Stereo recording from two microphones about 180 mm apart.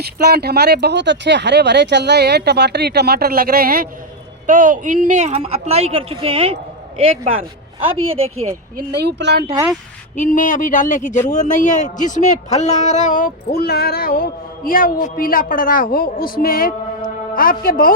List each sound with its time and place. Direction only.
0.0 s a woman's voice: 60° right (ahead or behind); by 8.5 s 35° right (ahead or behind)
8.9 s speech: 65° right (ahead or behind)
10.2 s speech: 45° left (ahead or behind)